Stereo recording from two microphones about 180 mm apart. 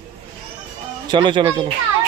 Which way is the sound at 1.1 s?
25° right (ahead or behind).